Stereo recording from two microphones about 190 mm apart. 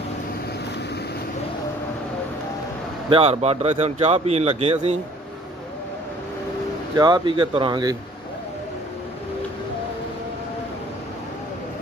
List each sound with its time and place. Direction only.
3.1 s a man's voice: 30° right (ahead or behind)
7.0 s speech: 25° right (ahead or behind)